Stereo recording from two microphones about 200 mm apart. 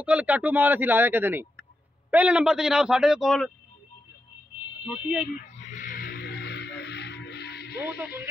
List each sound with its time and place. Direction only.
0.0 s a man's voice: 5° right (ahead or behind)
4.8 s a man's voice: 5° right (ahead or behind)
5.2 s a sound: 35° left (ahead or behind); by 7.8 s 55° left (ahead or behind)